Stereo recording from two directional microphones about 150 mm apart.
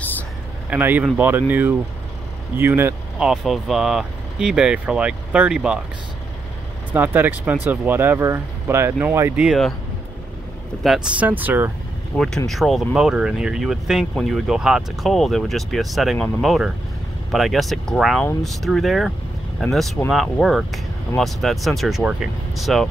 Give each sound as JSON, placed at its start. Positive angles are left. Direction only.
{"t": 0.7, "sound": "speech", "side_deg": -10}
{"t": 3.3, "sound": "speech", "side_deg": 0}
{"t": 6.9, "sound": "speech", "side_deg": -15}
{"t": 9.5, "sound": "speech", "side_deg": 0}
{"t": 10.8, "sound": "speech", "side_deg": -5}
{"t": 12.1, "sound": "speech", "side_deg": 10}